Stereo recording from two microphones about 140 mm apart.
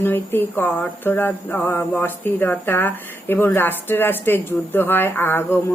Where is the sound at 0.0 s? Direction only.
15° left (ahead or behind).